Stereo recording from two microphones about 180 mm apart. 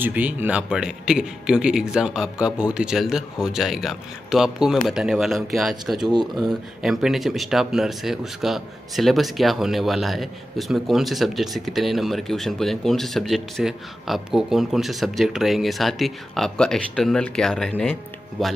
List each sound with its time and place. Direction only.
0.0 s speech: 10° right (ahead or behind)
6.1 s speech: 25° right (ahead or behind)
6.5 s speech: 5° right (ahead or behind)